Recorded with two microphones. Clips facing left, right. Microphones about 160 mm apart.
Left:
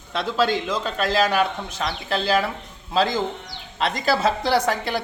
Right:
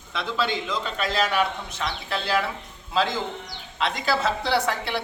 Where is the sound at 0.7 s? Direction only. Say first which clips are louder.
Left 4 dB; 45° left (ahead or behind).